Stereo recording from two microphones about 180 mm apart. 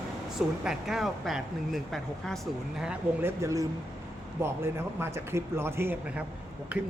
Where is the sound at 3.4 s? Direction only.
15° right (ahead or behind).